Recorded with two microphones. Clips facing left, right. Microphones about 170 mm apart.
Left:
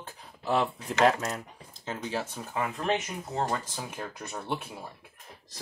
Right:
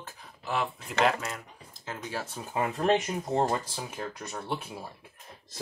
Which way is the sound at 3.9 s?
10° left (ahead or behind).